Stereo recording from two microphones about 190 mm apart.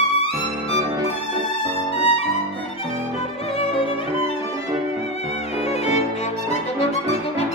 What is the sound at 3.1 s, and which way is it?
Violin, 30° left (ahead or behind).